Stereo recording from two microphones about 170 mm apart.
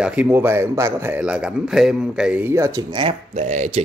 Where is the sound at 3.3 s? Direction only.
45° right (ahead or behind).